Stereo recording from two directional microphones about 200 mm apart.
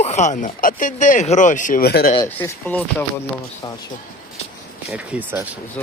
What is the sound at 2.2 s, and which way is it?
Speech, 10° left (ahead or behind).